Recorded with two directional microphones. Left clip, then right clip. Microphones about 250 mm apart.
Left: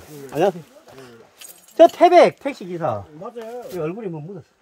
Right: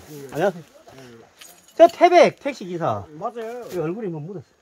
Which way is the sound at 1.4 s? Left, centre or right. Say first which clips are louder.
Left 1 dB; left.